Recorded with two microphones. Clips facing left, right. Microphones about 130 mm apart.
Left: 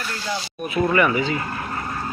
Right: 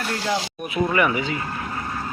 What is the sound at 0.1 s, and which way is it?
Speech, 85° right.